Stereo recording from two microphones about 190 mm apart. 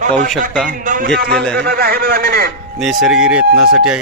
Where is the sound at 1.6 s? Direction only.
55° right (ahead or behind).